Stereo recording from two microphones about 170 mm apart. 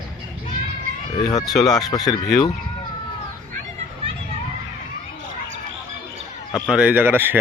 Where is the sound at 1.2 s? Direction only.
20° left (ahead or behind).